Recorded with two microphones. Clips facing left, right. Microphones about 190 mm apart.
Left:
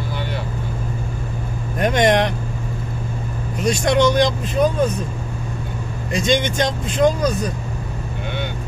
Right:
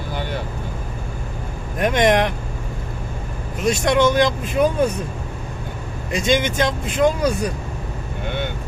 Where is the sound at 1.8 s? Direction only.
Centre (ahead or behind).